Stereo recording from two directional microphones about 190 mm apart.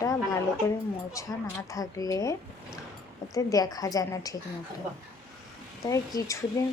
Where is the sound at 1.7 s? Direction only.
20° left (ahead or behind).